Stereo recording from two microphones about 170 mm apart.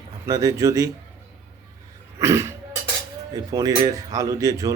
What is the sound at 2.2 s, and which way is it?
A man's voice, 15° right (ahead or behind).